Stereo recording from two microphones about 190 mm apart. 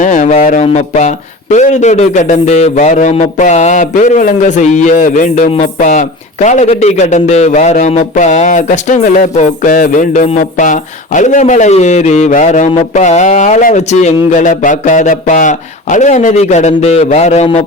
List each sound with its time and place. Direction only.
0.0 s speech: 40° left (ahead or behind)